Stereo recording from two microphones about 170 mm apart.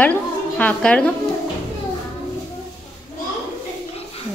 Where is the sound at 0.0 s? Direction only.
10° left (ahead or behind).